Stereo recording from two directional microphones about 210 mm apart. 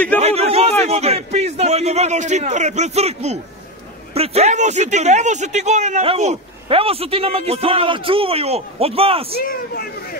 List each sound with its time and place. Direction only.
0.2 s a sound: 30° right (ahead or behind)
0.8 s a man's voice: 30° right (ahead or behind)
9.4 s speech: 45° left (ahead or behind)